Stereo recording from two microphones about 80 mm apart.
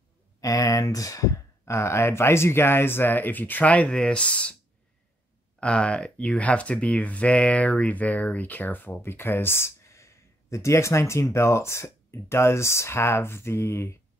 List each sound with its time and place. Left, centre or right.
0.4 s speech: left; by 4.6 s centre
5.6 s speech: centre; by 13.9 s left